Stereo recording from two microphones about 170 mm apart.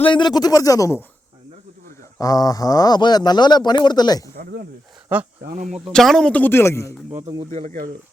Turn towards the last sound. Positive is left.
turn(degrees=-20)  # may be behind; listen again after turning